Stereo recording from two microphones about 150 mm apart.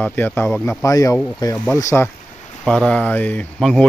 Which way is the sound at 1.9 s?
10° left (ahead or behind).